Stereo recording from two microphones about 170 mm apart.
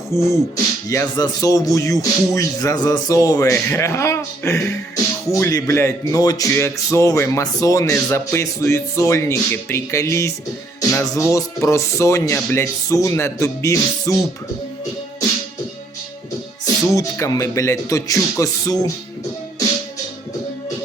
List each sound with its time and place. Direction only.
0.1 s speech: 15° left (ahead or behind)
16.9 s speech: 20° left (ahead or behind)